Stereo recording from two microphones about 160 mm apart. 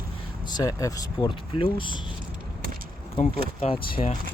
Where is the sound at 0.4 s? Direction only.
25° left (ahead or behind).